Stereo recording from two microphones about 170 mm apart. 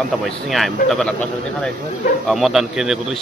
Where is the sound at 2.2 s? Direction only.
Centre (ahead or behind).